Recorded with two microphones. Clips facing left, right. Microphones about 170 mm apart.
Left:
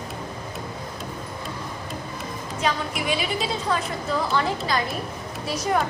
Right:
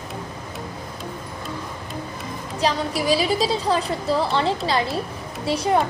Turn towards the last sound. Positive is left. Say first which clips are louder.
# right 4 dB
turn(degrees=-30)  # may be behind; listen again after turning